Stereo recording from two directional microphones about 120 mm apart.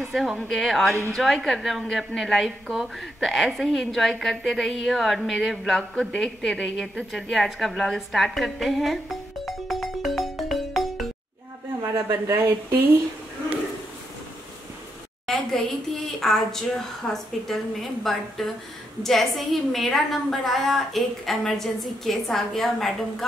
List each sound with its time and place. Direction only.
0.0 s a woman's voice: centre (ahead or behind)
11.9 s speech: 20° right (ahead or behind)
15.2 s a sound: 5° left (ahead or behind)
16.1 s a woman's voice: 5° left (ahead or behind)